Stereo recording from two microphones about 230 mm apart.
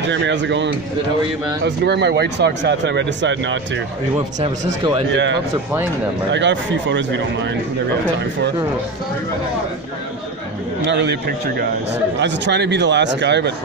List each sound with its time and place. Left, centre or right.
0.0 s speech: right
1.9 s speech: right
5.1 s speech: right
10.9 s speech: right